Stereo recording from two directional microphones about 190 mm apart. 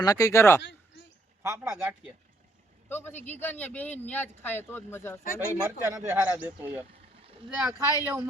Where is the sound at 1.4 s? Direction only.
15° right (ahead or behind).